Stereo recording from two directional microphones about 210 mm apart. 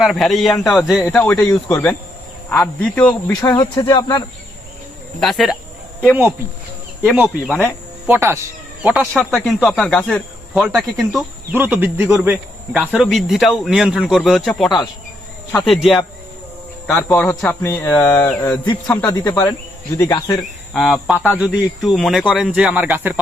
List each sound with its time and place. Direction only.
0.0 s speech: centre (ahead or behind); by 4.2 s 20° left (ahead or behind)
5.2 s speech: centre (ahead or behind); by 20.4 s 15° left (ahead or behind)
20.7 s speech: centre (ahead or behind)